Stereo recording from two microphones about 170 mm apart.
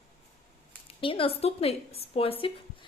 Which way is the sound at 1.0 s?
30° left (ahead or behind).